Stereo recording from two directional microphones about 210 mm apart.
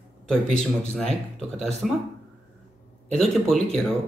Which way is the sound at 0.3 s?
Centre (ahead or behind).